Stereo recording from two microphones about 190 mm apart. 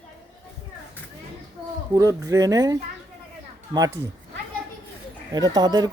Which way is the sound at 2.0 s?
15° right (ahead or behind).